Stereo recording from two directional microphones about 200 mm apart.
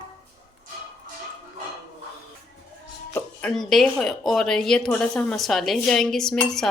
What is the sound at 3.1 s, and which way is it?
Speech, 5° left (ahead or behind).